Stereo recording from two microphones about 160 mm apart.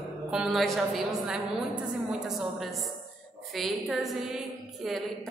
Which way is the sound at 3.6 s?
Centre (ahead or behind).